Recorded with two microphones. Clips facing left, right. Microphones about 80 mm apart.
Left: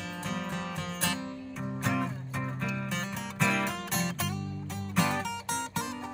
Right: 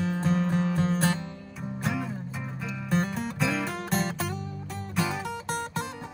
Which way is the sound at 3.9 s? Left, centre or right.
Right.